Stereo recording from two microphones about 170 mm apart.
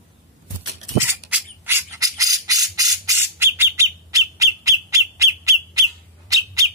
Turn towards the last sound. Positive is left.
turn(degrees=-20)  # may be behind; listen again after turning